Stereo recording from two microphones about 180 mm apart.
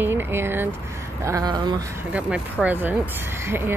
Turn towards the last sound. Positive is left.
turn(degrees=-15)  # may be behind; listen again after turning